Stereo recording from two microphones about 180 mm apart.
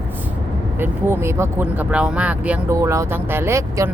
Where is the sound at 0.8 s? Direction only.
10° right (ahead or behind).